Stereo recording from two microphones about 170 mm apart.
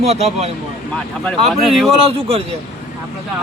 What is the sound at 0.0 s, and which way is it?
Speech, 40° right (ahead or behind).